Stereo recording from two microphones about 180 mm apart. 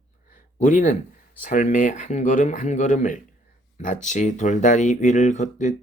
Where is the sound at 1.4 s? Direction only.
45° left (ahead or behind).